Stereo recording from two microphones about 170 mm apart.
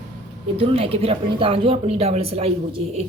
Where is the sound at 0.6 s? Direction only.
35° right (ahead or behind).